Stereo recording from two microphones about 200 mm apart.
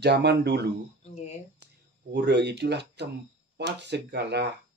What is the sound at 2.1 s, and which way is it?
Speech, 60° right (ahead or behind).